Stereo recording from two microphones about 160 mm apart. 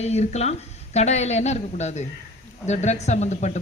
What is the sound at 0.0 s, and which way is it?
Speech, 45° left (ahead or behind).